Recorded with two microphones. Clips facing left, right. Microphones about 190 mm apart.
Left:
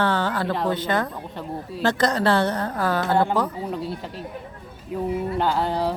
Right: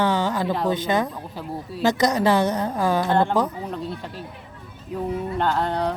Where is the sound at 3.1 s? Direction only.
5° left (ahead or behind).